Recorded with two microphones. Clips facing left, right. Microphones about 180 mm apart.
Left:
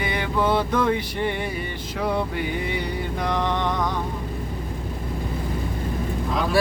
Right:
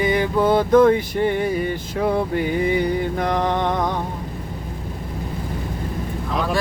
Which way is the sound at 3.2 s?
50° right (ahead or behind).